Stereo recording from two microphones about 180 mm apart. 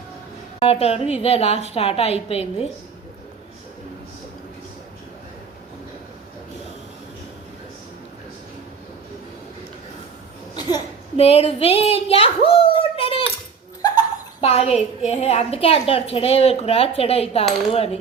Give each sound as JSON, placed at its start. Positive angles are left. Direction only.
{"t": 0.6, "sound": "a woman's voice", "side_deg": 35}
{"t": 10.5, "sound": "a sound", "side_deg": 25}
{"t": 11.2, "sound": "speech", "side_deg": 35}
{"t": 14.4, "sound": "a woman's voice", "side_deg": 35}